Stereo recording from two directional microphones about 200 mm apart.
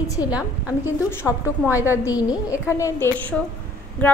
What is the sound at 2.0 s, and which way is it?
A woman's voice, 20° left (ahead or behind).